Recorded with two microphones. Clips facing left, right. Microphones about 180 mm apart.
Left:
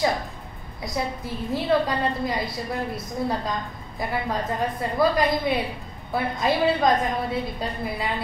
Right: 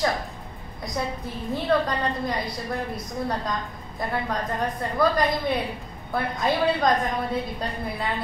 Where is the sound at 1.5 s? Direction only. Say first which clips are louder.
Left 1 dB; 5° left (ahead or behind).